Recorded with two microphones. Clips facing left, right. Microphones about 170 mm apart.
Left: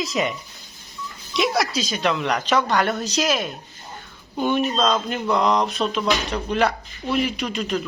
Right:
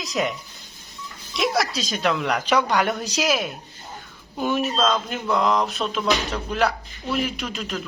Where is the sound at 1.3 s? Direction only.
Centre (ahead or behind).